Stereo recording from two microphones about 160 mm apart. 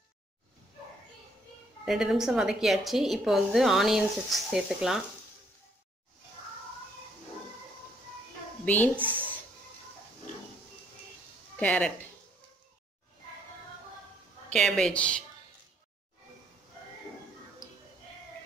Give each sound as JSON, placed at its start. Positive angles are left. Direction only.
{"t": 1.9, "sound": "a woman's voice", "side_deg": -5}
{"t": 8.6, "sound": "a woman's voice", "side_deg": 10}
{"t": 11.6, "sound": "a woman's voice", "side_deg": 10}
{"t": 14.5, "sound": "a woman's voice", "side_deg": 5}
{"t": 17.6, "sound": "music", "side_deg": 20}